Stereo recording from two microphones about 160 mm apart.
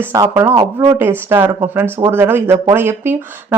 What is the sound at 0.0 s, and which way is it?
Speech, 15° right (ahead or behind).